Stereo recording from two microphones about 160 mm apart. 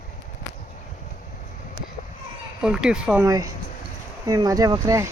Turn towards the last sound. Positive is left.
turn(degrees=-20)  # may be behind; listen again after turning